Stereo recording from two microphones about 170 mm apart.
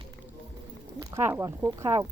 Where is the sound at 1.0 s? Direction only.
15° right (ahead or behind).